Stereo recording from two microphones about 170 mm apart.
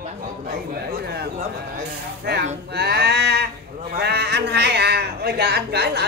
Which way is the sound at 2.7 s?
75° right (ahead or behind).